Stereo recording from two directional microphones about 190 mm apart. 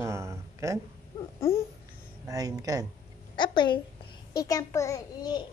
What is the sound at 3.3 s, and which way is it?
A woman's voice, 25° left (ahead or behind).